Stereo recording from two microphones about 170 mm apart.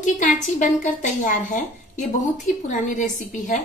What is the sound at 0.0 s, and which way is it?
A woman's voice, 50° left (ahead or behind).